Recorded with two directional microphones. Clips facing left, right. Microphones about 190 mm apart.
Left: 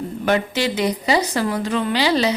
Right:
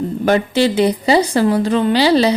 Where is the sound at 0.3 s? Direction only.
35° right (ahead or behind).